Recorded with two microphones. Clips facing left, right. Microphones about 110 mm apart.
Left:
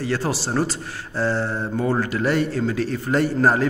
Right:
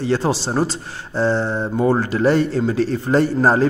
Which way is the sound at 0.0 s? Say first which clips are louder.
Right 5 dB; 25° right (ahead or behind).